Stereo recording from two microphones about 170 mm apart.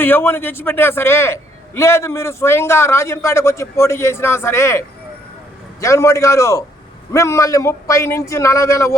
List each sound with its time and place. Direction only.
0.0 s a man's voice: 15° left (ahead or behind)